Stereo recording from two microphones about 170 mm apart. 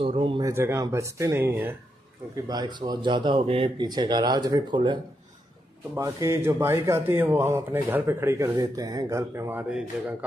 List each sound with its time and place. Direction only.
0.0 s speech: 30° right (ahead or behind)
0.4 s a man's voice: 15° right (ahead or behind)
2.4 s speech: 25° right (ahead or behind)
5.9 s a man's voice: 15° right (ahead or behind)